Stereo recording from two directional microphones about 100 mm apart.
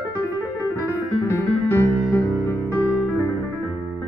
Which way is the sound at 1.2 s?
25° left (ahead or behind).